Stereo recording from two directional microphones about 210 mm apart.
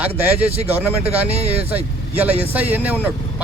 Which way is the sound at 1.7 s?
10° right (ahead or behind).